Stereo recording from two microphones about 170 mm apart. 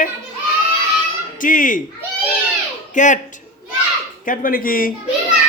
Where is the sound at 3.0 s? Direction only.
50° left (ahead or behind).